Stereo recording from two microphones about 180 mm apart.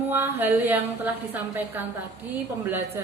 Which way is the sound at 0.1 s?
10° right (ahead or behind).